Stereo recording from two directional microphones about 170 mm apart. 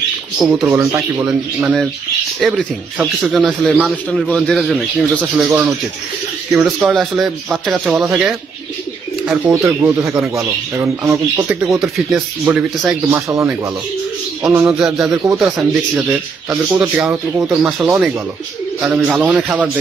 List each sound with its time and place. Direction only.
0.4 s speech: centre (ahead or behind)
9.5 s speech: 15° right (ahead or behind)
11.8 s speech: 5° right (ahead or behind)
18.8 s speech: 5° right (ahead or behind)